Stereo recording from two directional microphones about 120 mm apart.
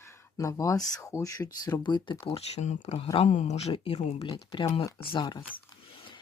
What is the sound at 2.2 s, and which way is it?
Speech, 60° left (ahead or behind).